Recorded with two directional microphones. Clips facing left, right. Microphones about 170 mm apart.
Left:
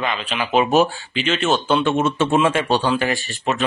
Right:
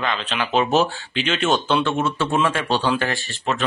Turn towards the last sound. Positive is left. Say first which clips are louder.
# left 2 dB
turn(degrees=20)  # may be behind; listen again after turning